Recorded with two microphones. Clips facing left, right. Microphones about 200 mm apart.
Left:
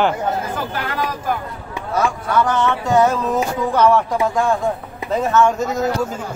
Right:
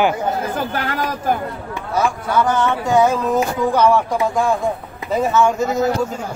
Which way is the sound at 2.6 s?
Centre (ahead or behind).